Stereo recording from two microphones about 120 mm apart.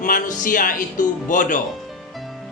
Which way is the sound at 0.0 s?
90° left.